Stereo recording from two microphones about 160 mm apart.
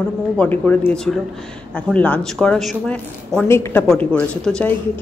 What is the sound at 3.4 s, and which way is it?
Speech, 15° left (ahead or behind).